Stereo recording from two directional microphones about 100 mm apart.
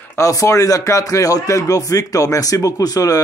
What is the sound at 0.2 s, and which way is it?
Speech, 35° left (ahead or behind).